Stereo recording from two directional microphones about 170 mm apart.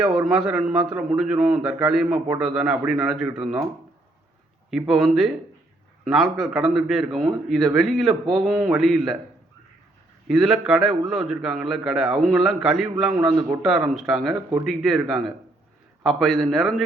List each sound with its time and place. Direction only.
0.0 s a man's voice: 5° right (ahead or behind)
4.7 s a man's voice: centre (ahead or behind)
10.2 s a man's voice: centre (ahead or behind)
13.1 s a man's voice: 20° right (ahead or behind)
13.6 s a man's voice: centre (ahead or behind)
16.0 s a man's voice: centre (ahead or behind)